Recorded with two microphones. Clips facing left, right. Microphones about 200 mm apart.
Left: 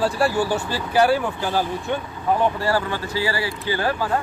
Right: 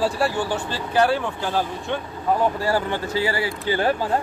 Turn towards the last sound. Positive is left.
turn(degrees=-25)  # may be behind; listen again after turning